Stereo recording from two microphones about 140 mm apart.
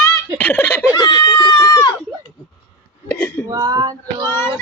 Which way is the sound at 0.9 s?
30° left (ahead or behind).